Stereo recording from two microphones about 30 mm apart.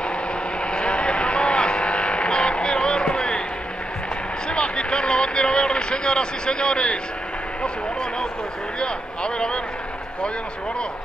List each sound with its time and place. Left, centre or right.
0.7 s vehicle: left
4.5 s a sound: left
8.7 s speech: left